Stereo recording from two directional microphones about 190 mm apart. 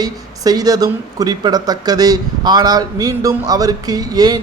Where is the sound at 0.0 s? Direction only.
20° right (ahead or behind).